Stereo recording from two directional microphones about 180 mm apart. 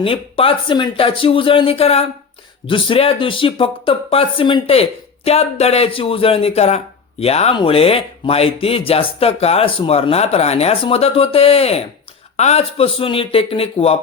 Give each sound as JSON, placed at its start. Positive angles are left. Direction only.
{"t": 0.0, "sound": "speech", "side_deg": 30}